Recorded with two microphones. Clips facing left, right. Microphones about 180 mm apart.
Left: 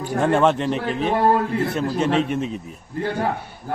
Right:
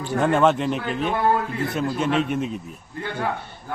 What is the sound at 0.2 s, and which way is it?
Speech, centre (ahead or behind).